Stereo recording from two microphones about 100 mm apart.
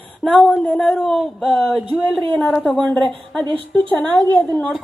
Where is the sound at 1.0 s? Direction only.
5° left (ahead or behind).